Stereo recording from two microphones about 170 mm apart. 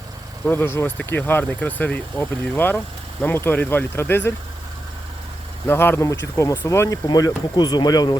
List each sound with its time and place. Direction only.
0.4 s speech: 15° left (ahead or behind)
5.6 s speech: 15° left (ahead or behind)